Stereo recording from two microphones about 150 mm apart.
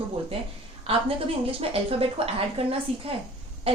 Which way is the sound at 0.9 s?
40° right (ahead or behind).